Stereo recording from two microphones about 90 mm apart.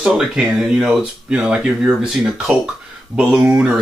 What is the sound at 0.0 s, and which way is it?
Speech, 5° right (ahead or behind).